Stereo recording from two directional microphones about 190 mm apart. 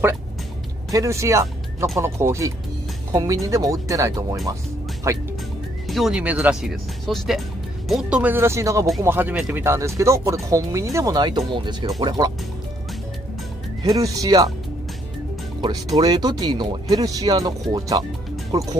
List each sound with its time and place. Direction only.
0.9 s speech: 15° right (ahead or behind)
5.9 s speech: centre (ahead or behind); by 12.3 s 25° right (ahead or behind)
13.8 s speech: 20° right (ahead or behind)
15.6 s speech: 20° right (ahead or behind)